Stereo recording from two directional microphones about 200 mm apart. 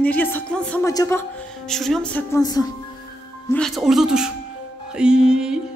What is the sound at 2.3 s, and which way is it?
Speech, 20° left (ahead or behind).